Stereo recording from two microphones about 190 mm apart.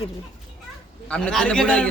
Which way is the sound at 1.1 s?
5° left (ahead or behind).